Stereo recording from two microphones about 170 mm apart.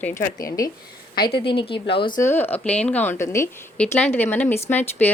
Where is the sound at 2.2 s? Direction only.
10° left (ahead or behind).